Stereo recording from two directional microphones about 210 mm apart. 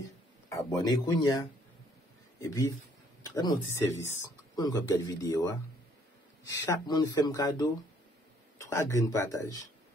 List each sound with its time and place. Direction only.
0.5 s speech: 15° left (ahead or behind)
2.4 s speech: 15° left (ahead or behind)